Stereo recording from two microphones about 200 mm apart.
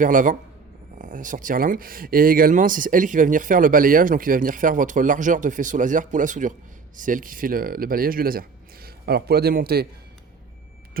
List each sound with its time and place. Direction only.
0.0 s a man's voice: 40° right (ahead or behind)